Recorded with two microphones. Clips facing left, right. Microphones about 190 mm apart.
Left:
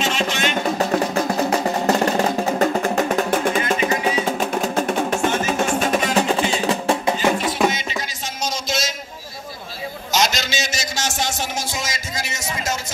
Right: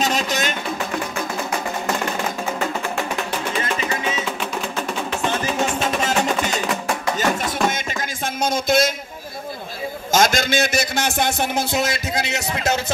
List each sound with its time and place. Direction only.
0.0 s music: 40° right (ahead or behind)
0.7 s music: 40° left (ahead or behind)
6.1 s music: 30° left (ahead or behind)
7.7 s music: 50° right (ahead or behind)
10.1 s a man's voice: 50° right (ahead or behind)